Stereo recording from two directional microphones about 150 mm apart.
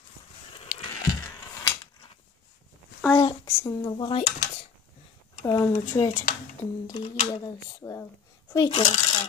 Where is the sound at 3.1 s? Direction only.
20° left (ahead or behind).